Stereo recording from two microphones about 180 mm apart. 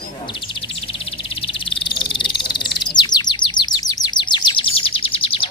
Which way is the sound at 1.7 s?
25° left (ahead or behind).